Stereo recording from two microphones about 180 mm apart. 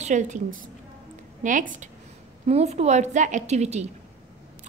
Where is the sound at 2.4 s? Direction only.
35° right (ahead or behind).